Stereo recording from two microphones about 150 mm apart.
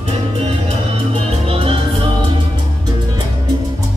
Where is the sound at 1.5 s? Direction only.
40° right (ahead or behind).